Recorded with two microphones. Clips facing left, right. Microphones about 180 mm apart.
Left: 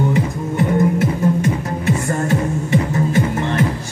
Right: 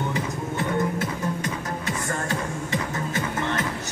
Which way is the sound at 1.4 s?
25° left (ahead or behind).